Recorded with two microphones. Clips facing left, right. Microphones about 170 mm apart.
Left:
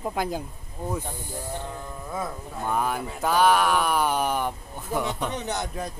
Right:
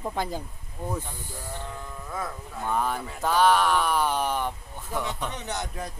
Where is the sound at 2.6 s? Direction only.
10° left (ahead or behind).